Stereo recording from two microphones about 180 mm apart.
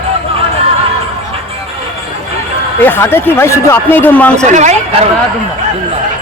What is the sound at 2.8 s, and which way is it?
A man's voice, 10° left (ahead or behind).